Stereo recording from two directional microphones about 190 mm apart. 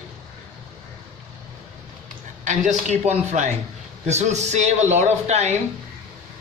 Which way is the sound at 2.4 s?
40° right (ahead or behind).